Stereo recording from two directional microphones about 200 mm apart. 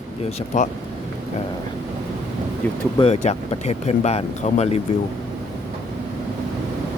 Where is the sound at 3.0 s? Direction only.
30° left (ahead or behind).